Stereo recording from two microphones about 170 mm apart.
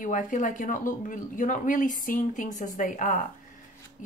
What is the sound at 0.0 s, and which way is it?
A woman's voice, 50° left (ahead or behind).